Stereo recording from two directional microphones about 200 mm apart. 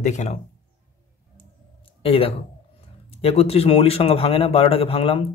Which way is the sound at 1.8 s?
30° left (ahead or behind).